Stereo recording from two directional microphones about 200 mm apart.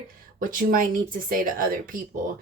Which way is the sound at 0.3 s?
45° right (ahead or behind).